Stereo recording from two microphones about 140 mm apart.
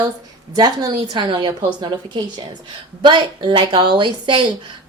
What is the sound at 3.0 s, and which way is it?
A woman's voice, 35° right (ahead or behind).